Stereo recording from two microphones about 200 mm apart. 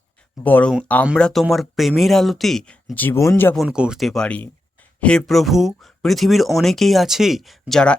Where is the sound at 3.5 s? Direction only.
5° right (ahead or behind).